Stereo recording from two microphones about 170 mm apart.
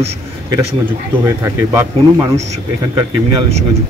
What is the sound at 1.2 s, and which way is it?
Speech, 15° right (ahead or behind).